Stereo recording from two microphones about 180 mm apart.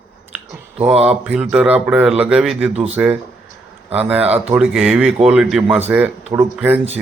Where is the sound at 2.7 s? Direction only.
35° right (ahead or behind).